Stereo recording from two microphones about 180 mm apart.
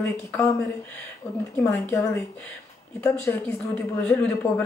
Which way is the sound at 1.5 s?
10° left (ahead or behind).